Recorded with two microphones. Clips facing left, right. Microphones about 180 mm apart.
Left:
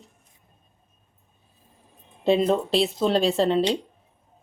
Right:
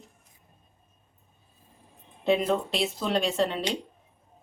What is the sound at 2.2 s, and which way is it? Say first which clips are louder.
Speech: left 4 dB; 30° left (ahead or behind).